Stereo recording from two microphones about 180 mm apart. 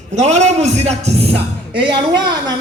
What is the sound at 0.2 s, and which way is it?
A man's voice, 40° right (ahead or behind).